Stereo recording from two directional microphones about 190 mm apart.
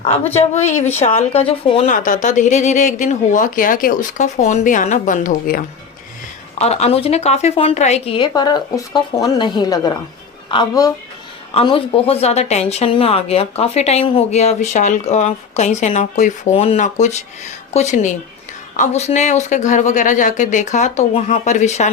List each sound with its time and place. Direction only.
0.3 s speech: 35° left (ahead or behind)
1.9 s speech: 45° left (ahead or behind)
6.6 s speech: 35° left (ahead or behind)